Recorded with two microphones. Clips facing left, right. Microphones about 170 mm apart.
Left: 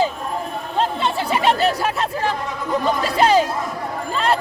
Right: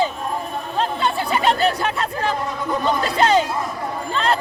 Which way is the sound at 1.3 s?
Centre (ahead or behind).